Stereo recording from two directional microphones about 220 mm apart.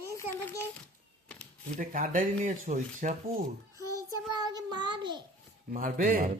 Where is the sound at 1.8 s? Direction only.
35° right (ahead or behind).